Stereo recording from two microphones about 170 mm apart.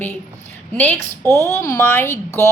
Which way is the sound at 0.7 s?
10° left (ahead or behind).